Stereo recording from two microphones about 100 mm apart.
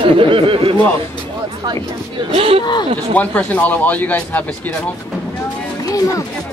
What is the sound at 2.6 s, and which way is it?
Speech, 50° left (ahead or behind).